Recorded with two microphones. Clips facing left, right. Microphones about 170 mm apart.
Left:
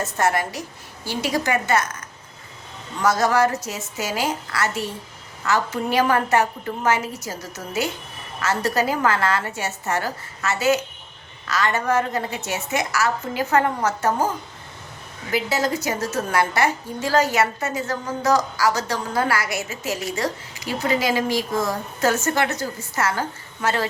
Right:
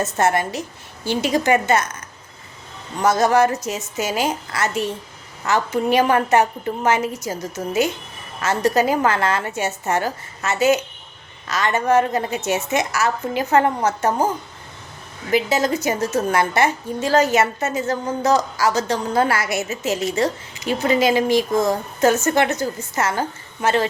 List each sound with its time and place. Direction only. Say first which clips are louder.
0.0 s a woman's voice: right 3 dB; 25° right (ahead or behind)
3.0 s a woman's voice: right 3 dB; 20° right (ahead or behind)
15.3 s a woman's voice: right 4 dB; 20° right (ahead or behind)